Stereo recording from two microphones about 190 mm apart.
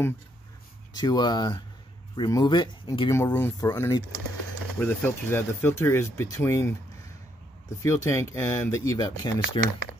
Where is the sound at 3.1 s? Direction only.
15° left (ahead or behind).